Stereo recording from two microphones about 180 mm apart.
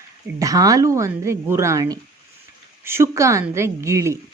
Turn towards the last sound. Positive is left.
turn(degrees=-15)  # may be behind; listen again after turning